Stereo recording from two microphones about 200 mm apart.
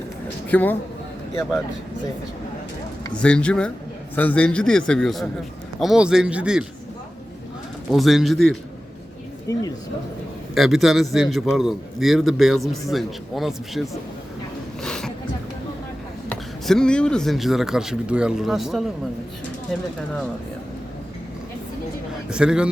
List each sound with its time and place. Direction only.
0.4 s speech: 10° left (ahead or behind)
3.2 s speech: 5° left (ahead or behind)
7.9 s speech: centre (ahead or behind)
9.5 s speech: 15° left (ahead or behind)
10.5 s speech: centre (ahead or behind)
14.8 s a sound: 5° left (ahead or behind)
16.3 s speech: 5° left (ahead or behind)
22.3 s speech: 5° right (ahead or behind)